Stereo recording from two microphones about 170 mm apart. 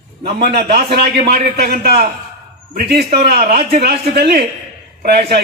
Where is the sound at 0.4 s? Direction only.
65° right (ahead or behind).